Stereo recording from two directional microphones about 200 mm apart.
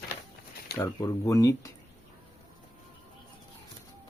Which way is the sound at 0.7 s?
15° left (ahead or behind).